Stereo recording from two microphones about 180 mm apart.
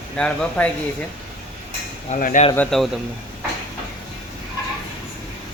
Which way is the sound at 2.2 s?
45° left (ahead or behind).